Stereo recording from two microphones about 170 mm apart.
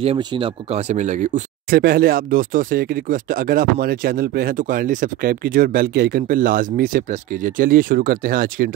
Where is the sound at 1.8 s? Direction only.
60° right (ahead or behind).